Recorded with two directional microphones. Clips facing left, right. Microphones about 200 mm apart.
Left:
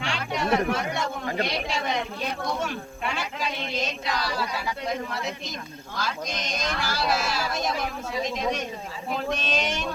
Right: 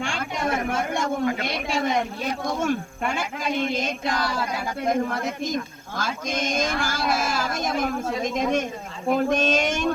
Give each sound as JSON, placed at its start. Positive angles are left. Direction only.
{"t": 0.0, "sound": "music", "side_deg": -50}
{"t": 1.5, "sound": "speech", "side_deg": -50}